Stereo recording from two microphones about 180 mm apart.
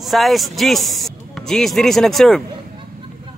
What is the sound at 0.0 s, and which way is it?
Speech, centre (ahead or behind).